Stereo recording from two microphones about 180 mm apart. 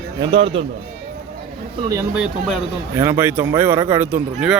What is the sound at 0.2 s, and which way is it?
Speech, 30° right (ahead or behind).